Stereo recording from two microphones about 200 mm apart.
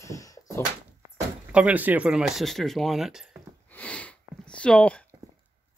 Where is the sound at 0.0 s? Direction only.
15° left (ahead or behind).